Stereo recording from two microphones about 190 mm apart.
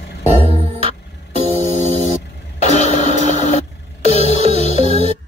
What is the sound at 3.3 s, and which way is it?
Printer, 40° left (ahead or behind).